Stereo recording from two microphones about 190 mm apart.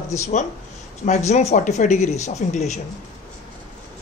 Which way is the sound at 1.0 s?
35° left (ahead or behind).